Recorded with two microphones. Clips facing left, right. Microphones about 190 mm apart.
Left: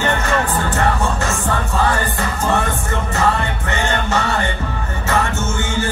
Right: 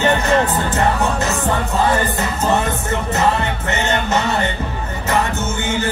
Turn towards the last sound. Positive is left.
turn(degrees=-20)  # may be behind; listen again after turning